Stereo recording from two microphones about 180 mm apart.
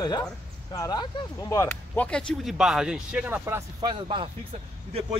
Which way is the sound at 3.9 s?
25° right (ahead or behind).